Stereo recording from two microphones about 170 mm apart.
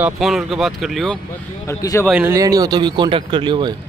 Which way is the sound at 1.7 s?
15° left (ahead or behind).